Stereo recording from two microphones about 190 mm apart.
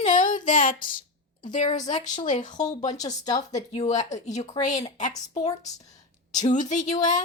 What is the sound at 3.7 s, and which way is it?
Speech, 40° left (ahead or behind).